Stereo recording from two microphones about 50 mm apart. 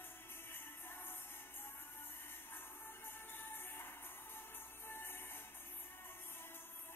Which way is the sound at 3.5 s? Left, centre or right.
Left.